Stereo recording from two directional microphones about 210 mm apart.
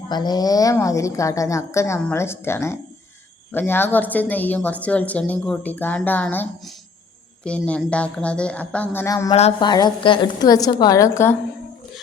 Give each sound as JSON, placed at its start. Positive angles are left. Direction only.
{"t": 0.1, "sound": "a woman's voice", "side_deg": 20}